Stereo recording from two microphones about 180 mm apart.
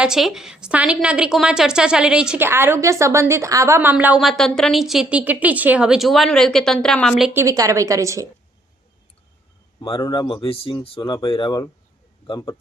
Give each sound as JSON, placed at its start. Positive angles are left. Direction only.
{"t": 0.0, "sound": "a woman's voice", "side_deg": -5}
{"t": 7.3, "sound": "a woman's voice", "side_deg": -20}
{"t": 10.0, "sound": "speech", "side_deg": 25}